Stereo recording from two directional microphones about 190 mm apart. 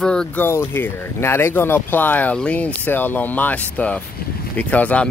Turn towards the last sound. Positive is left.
turn(degrees=5)  # may be behind; listen again after turning